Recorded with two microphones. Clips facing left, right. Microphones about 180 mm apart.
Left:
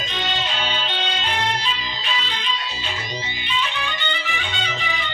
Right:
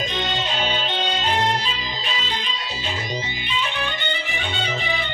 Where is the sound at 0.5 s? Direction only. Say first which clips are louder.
Right 2 dB; 40° right (ahead or behind).